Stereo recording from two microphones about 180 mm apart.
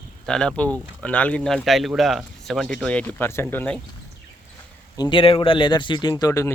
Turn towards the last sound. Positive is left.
turn(degrees=20)  # may be behind; listen again after turning